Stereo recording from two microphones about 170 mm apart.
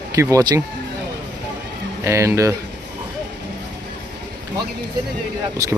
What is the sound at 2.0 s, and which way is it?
Speech, 15° right (ahead or behind).